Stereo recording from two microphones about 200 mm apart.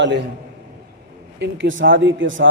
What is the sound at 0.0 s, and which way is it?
Speech, 60° right (ahead or behind).